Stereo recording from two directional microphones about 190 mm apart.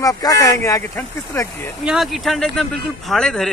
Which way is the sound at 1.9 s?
Centre (ahead or behind).